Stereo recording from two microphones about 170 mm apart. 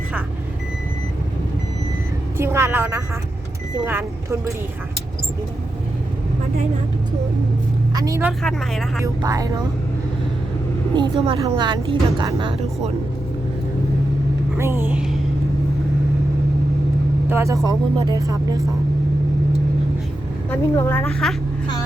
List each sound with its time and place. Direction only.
2.4 s speech: 15° right (ahead or behind)
7.9 s speech: 20° right (ahead or behind)
8.2 s speech: centre (ahead or behind)
9.2 s speech: 20° right (ahead or behind)
10.9 s speech: 30° right (ahead or behind)
14.6 s speech: 15° right (ahead or behind)
17.2 s speech: 15° right (ahead or behind)
20.5 s a woman's voice: 15° left (ahead or behind)
21.1 s speech: centre (ahead or behind)